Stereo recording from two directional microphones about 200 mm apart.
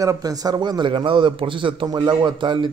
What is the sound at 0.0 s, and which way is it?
A man's voice, 15° right (ahead or behind).